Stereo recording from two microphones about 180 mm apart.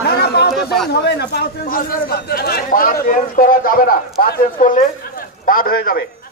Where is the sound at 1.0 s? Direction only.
65° left (ahead or behind).